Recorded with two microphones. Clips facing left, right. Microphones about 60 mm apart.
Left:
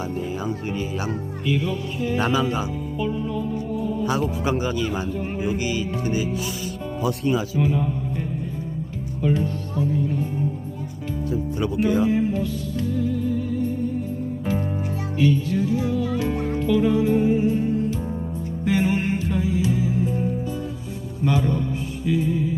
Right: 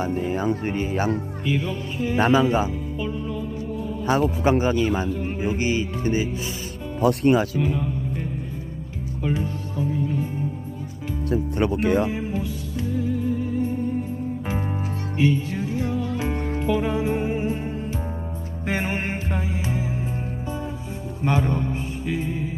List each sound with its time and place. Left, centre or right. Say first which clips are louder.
0.0 s speech: right 3 dB; right
1.5 s music: left 2 dB; right
3.0 s music: left 4 dB; centre
4.4 s speech: right 4 dB; right
5.0 s speech: right 1 dB; centre
5.4 s music: right 2 dB; right
7.0 s speech: right 5 dB; right
9.2 s speech: left 3 dB; centre
11.3 s speech: right 3 dB; right
12.0 s music: left 5 dB; centre; by 13.7 s right
15.2 s music: left 2 dB; right
21.2 s speech: left 1 dB; right
22.0 s music: left 6 dB; right